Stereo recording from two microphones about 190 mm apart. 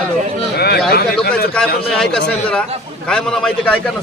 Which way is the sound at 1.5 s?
5° left (ahead or behind).